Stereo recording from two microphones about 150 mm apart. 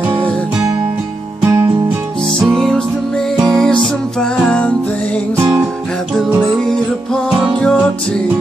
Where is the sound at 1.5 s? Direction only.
25° right (ahead or behind).